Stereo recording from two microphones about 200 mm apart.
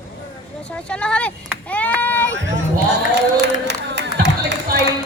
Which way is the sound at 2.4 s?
60° right (ahead or behind).